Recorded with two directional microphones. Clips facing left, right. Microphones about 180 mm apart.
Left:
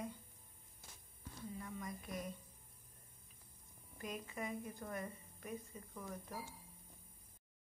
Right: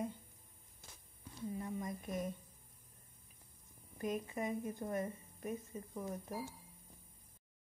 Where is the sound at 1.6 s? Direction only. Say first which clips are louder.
Right 5 dB; 25° right (ahead or behind).